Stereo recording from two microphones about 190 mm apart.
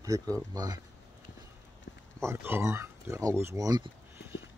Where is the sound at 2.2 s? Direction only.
10° right (ahead or behind).